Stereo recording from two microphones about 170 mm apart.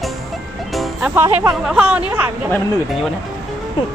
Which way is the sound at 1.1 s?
15° right (ahead or behind).